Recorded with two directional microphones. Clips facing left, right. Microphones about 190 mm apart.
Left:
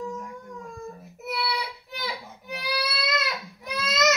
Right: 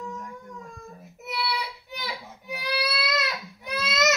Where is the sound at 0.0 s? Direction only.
Centre (ahead or behind).